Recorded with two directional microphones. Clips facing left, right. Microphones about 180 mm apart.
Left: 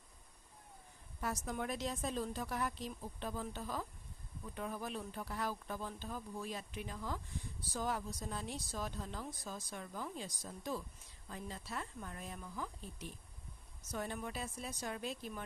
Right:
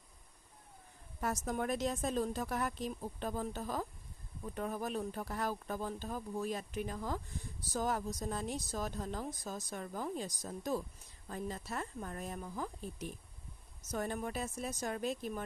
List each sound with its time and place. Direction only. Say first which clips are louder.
1.2 s speech: right 4 dB; 45° right (ahead or behind)